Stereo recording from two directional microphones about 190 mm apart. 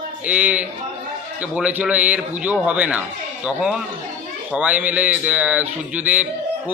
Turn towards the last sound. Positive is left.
turn(degrees=-5)  # may be behind; listen again after turning